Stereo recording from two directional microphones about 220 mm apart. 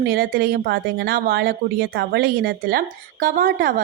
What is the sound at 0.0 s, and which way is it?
A woman's voice, 40° right (ahead or behind).